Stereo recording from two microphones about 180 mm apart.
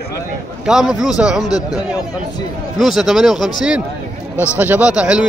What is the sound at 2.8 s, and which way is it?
A man's voice, centre (ahead or behind).